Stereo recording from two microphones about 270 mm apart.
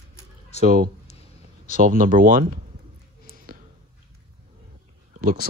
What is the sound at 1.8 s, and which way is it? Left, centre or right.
Speech, right.